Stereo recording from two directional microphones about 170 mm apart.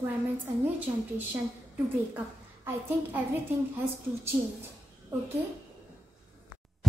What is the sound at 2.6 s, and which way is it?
Speech, 10° right (ahead or behind).